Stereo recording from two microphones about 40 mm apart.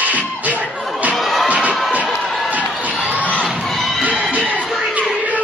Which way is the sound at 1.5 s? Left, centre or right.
Right.